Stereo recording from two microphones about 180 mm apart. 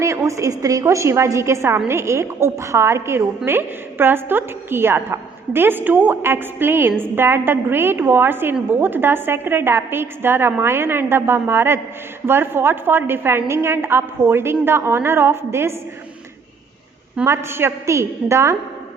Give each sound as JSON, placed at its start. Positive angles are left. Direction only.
{"t": 0.0, "sound": "a woman's voice", "side_deg": -15}
{"t": 17.2, "sound": "a woman's voice", "side_deg": -15}